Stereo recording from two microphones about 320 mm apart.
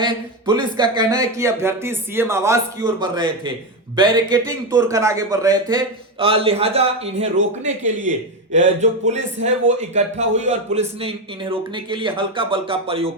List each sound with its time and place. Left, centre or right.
0.0 s a man's voice: centre